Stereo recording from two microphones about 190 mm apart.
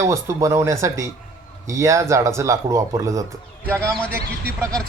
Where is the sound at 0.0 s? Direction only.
15° right (ahead or behind).